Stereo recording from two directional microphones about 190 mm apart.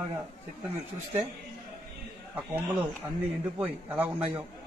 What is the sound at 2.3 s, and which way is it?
Speech, 5° right (ahead or behind).